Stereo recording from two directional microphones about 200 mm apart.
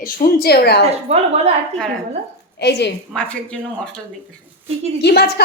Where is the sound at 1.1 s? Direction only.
30° right (ahead or behind).